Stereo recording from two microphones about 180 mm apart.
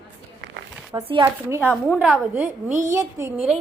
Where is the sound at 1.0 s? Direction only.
25° right (ahead or behind).